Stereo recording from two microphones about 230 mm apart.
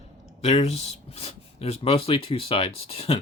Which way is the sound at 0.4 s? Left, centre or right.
Left.